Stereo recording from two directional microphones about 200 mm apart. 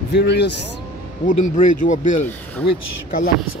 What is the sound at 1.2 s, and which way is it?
Speech, 40° left (ahead or behind).